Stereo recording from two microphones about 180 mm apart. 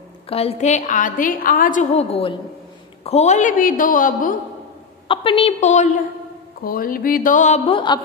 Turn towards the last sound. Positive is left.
turn(degrees=25)  # may be behind; listen again after turning